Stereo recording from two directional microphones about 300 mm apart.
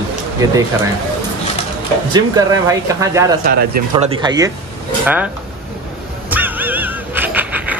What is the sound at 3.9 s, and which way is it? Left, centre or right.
Speech, centre.